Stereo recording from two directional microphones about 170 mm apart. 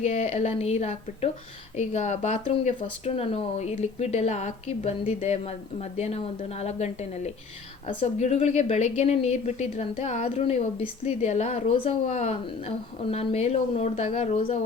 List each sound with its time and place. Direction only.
0.0 s speech: 40° left (ahead or behind)